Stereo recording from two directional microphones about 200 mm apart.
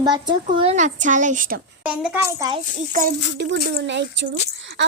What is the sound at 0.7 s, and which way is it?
Speech, 40° right (ahead or behind).